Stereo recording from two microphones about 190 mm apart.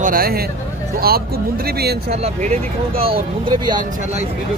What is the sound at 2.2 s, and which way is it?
Speech, 35° right (ahead or behind).